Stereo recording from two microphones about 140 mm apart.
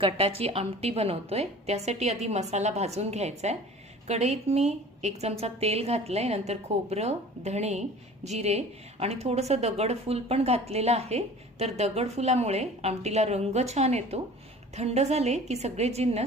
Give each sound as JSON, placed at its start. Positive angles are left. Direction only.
{"t": 0.0, "sound": "a woman's voice", "side_deg": -45}